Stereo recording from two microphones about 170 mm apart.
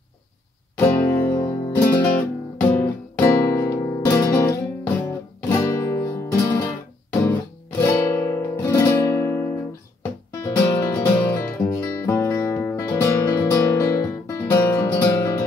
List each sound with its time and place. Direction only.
0.7 s music: 15° left (ahead or behind)
7.8 s guitar: 15° left (ahead or behind)
10.4 s music: 15° left (ahead or behind)